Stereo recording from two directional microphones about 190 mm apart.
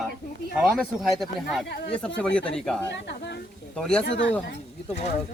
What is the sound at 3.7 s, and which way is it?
Speech, 5° left (ahead or behind).